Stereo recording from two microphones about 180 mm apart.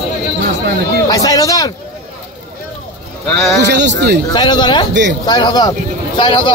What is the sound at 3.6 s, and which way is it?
Speech, 70° right (ahead or behind).